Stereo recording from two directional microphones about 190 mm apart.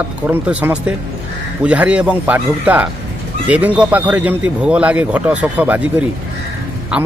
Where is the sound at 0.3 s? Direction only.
10° right (ahead or behind).